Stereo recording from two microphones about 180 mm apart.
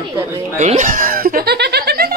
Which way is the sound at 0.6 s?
40° right (ahead or behind).